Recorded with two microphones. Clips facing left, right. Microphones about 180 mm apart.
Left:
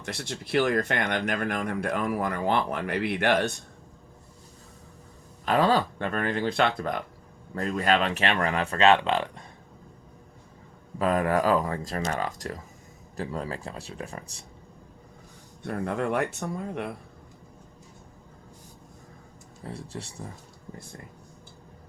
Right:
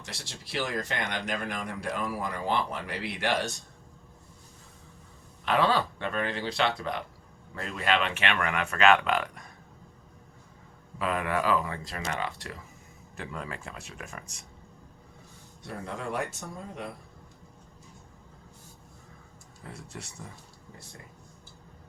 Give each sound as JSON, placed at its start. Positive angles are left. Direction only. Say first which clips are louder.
{"t": 0.0, "sound": "speech", "louder": "left 9 dB", "side_deg": 55}
{"t": 5.5, "sound": "speech", "louder": "left 3 dB", "side_deg": 40}
{"t": 10.9, "sound": "speech", "louder": "left 5 dB", "side_deg": 40}
{"t": 15.6, "sound": "speech", "louder": "left 8 dB", "side_deg": 60}
{"t": 19.6, "sound": "speech", "louder": "left 6 dB", "side_deg": 30}